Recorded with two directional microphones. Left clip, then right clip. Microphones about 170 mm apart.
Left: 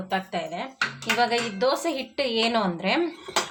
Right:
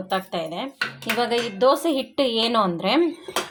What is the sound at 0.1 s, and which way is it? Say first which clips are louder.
Speech: right 2 dB; 35° right (ahead or behind).